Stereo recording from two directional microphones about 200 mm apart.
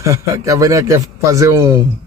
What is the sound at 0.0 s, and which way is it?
Speech, 15° right (ahead or behind).